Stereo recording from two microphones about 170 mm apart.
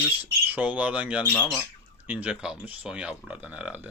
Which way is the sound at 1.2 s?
10° left (ahead or behind).